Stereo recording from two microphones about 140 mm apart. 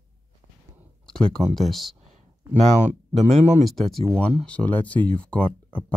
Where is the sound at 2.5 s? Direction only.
55° right (ahead or behind).